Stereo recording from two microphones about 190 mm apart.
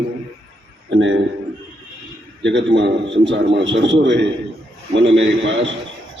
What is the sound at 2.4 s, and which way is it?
A man's voice, 70° right (ahead or behind).